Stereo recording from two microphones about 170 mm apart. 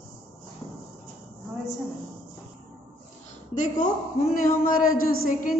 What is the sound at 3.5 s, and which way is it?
A woman's voice, 45° left (ahead or behind).